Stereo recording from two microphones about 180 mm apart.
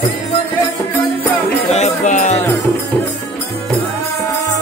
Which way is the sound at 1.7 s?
40° left (ahead or behind).